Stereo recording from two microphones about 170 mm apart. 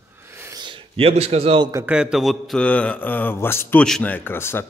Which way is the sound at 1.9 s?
5° right (ahead or behind).